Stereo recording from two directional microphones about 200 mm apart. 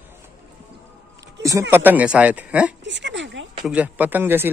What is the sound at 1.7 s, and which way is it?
Speech, 10° right (ahead or behind).